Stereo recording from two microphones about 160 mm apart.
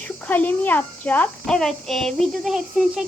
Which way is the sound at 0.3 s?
10° left (ahead or behind).